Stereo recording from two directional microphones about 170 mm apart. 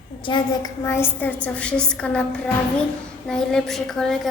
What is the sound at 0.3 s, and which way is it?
Speech, 25° left (ahead or behind).